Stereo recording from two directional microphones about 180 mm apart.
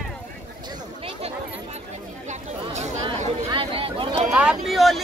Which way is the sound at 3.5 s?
30° right (ahead or behind).